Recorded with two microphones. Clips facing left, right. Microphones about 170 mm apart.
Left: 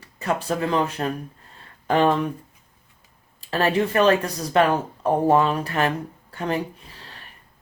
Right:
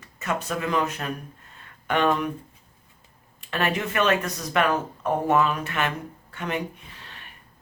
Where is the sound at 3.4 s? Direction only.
35° left (ahead or behind).